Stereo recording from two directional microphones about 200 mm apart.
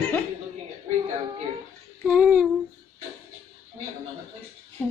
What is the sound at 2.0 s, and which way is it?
Speech, 5° right (ahead or behind).